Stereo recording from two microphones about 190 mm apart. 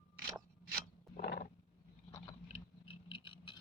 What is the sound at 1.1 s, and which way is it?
Wild animals, 55° left (ahead or behind).